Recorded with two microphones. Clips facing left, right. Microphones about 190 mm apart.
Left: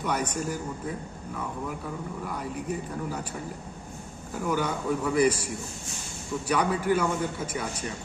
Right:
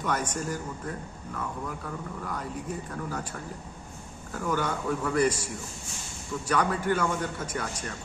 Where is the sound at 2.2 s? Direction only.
10° left (ahead or behind).